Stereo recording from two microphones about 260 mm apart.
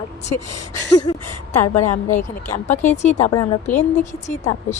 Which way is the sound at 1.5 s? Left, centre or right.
Left.